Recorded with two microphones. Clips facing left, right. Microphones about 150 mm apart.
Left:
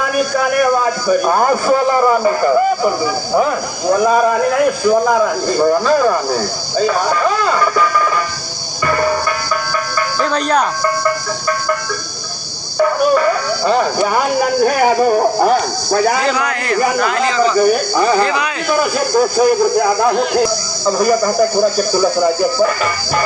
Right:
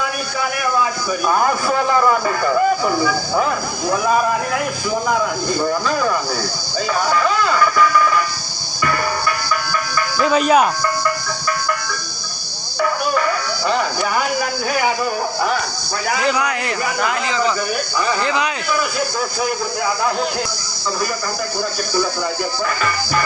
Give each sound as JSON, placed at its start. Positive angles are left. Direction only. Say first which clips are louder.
{"t": 0.0, "sound": "speech", "louder": "left 7 dB", "side_deg": 50}
{"t": 6.7, "sound": "speech", "louder": "left 4 dB", "side_deg": 35}
{"t": 8.8, "sound": "music", "louder": "left 4 dB", "side_deg": 40}
{"t": 10.2, "sound": "speech", "louder": "right 3 dB", "side_deg": -5}
{"t": 12.8, "sound": "speech", "louder": "left 6 dB", "side_deg": 35}
{"t": 16.2, "sound": "speech", "louder": "left 2 dB", "side_deg": -15}
{"t": 17.6, "sound": "speech", "louder": "left 9 dB", "side_deg": 40}